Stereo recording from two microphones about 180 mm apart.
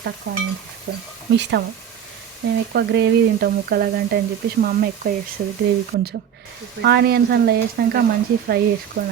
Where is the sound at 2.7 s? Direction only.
65° right (ahead or behind).